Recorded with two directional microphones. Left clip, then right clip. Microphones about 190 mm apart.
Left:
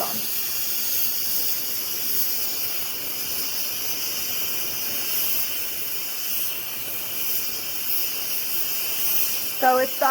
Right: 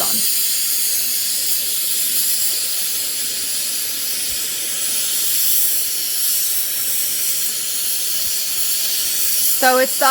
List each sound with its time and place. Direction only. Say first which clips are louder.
9.6 s speech: right 4 dB; 65° right (ahead or behind)